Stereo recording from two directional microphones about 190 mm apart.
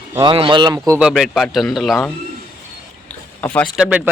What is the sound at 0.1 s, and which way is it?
Speech, 25° right (ahead or behind).